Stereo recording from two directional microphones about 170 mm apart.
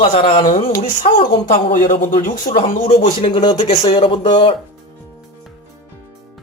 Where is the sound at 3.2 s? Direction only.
30° left (ahead or behind).